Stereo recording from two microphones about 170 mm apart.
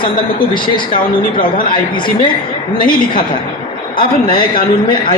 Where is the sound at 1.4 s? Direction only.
55° left (ahead or behind).